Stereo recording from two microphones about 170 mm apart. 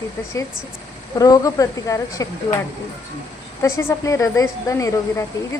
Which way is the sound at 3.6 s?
15° left (ahead or behind).